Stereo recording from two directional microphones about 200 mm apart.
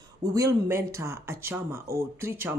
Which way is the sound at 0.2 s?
15° right (ahead or behind).